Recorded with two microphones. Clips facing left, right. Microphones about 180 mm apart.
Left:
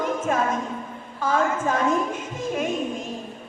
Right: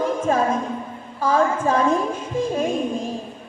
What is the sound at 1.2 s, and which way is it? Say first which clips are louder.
A woman's voice: right 4 dB; 35° right (ahead or behind).